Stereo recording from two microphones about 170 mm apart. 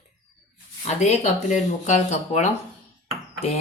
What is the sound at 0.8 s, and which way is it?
Speech, 40° left (ahead or behind).